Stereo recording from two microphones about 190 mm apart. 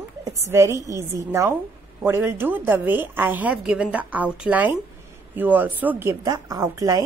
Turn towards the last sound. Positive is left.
turn(degrees=-15)  # may be behind; listen again after turning